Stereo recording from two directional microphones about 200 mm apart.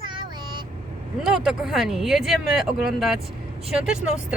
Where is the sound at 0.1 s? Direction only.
25° right (ahead or behind).